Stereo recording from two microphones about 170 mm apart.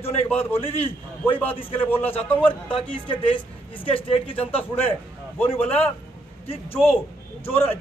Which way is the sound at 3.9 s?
35° left (ahead or behind).